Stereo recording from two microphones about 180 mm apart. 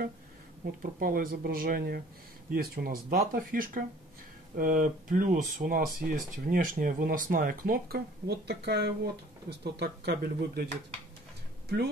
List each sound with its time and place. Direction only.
0.9 s speech: 50° right (ahead or behind)